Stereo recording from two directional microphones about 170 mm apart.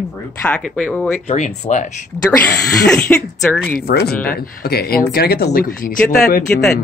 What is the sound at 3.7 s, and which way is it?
Speech, 70° left (ahead or behind).